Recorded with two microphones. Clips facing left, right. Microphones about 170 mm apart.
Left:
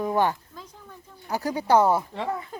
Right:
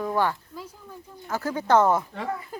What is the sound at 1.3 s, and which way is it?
Speech, 15° left (ahead or behind).